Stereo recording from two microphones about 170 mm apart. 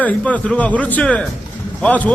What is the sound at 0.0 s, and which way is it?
A man's voice, 10° left (ahead or behind).